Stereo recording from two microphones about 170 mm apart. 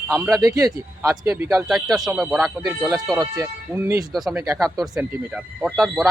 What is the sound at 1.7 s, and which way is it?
Speech, centre (ahead or behind).